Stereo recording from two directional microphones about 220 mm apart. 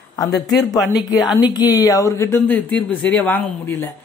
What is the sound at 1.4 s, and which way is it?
Speech, 20° left (ahead or behind).